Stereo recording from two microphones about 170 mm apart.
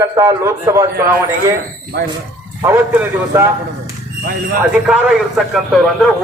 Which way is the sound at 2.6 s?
10° right (ahead or behind).